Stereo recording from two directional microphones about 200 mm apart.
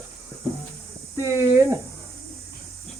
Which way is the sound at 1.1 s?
15° right (ahead or behind).